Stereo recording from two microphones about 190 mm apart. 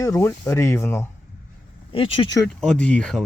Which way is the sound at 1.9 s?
30° left (ahead or behind).